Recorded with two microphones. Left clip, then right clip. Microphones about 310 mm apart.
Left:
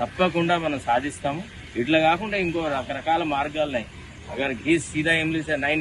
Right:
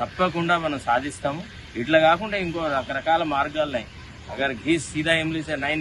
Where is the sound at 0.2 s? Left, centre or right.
Centre.